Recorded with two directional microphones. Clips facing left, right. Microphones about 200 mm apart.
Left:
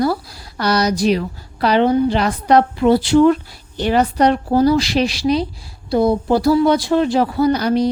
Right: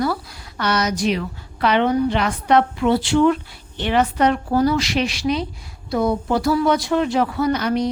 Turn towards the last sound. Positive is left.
turn(degrees=35)  # may be behind; listen again after turning